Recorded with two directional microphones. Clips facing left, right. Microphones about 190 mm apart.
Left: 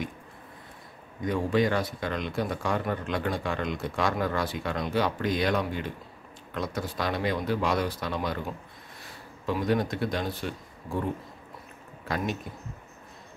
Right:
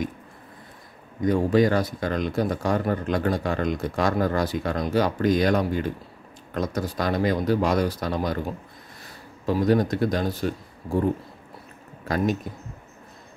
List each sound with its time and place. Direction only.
1.2 s speech: 40° right (ahead or behind)
9.5 s speech: 40° right (ahead or behind)